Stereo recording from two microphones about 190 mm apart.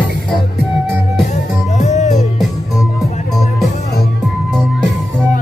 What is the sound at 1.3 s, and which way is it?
Music, 35° left (ahead or behind).